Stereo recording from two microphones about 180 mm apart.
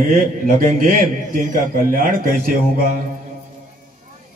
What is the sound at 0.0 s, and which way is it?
A man's voice, 50° right (ahead or behind).